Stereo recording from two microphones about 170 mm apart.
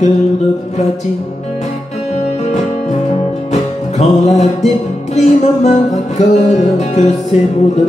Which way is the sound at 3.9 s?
40° left (ahead or behind).